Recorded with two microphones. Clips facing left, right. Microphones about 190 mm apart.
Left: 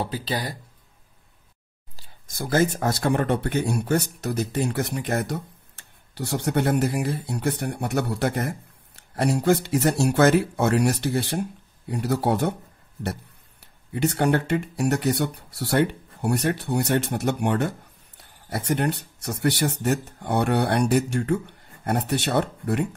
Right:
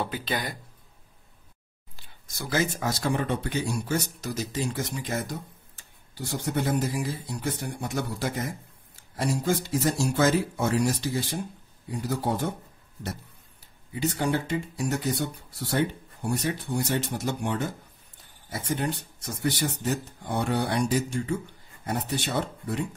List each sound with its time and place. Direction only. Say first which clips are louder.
0.0 s speech: left 2 dB; 35° left (ahead or behind)
2.3 s speech: left 6 dB; 50° left (ahead or behind)